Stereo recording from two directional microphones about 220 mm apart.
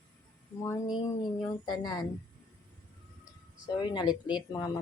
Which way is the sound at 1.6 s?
20° left (ahead or behind).